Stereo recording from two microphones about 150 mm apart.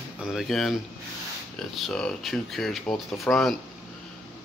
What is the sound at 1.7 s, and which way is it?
Speech, centre (ahead or behind).